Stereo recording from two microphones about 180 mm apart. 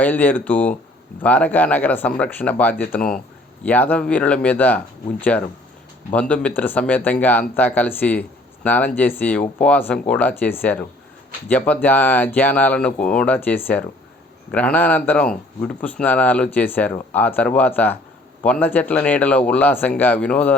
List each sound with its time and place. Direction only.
0.0 s speech: 10° left (ahead or behind)